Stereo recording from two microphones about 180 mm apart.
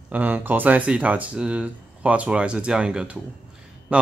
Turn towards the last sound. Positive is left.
turn(degrees=-5)  # may be behind; listen again after turning